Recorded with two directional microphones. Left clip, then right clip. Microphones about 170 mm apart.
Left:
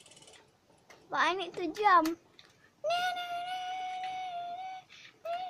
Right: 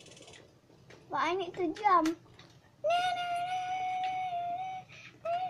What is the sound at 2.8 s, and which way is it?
Music, 20° left (ahead or behind).